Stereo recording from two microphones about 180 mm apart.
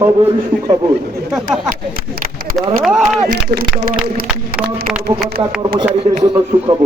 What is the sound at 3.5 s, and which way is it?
Speech, 60° right (ahead or behind).